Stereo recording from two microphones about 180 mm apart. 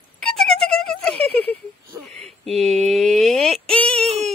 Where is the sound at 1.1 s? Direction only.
30° right (ahead or behind).